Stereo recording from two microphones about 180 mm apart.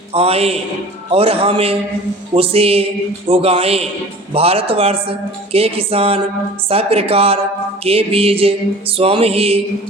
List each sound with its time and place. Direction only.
0.1 s a woman's voice: 35° right (ahead or behind)